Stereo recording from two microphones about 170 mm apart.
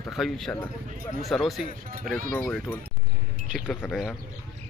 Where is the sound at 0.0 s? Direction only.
Centre (ahead or behind).